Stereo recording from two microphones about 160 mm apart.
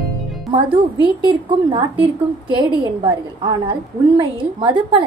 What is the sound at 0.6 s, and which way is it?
A woman's voice, 30° right (ahead or behind).